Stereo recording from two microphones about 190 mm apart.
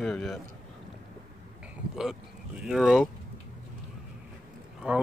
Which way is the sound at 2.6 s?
Centre (ahead or behind).